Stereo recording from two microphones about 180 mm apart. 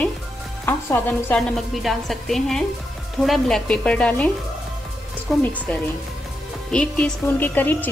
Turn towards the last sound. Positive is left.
turn(degrees=10)  # may be behind; listen again after turning